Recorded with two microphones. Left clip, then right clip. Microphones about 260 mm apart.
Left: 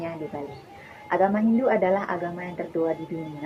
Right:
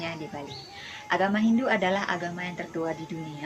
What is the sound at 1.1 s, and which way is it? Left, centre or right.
A woman's voice, right.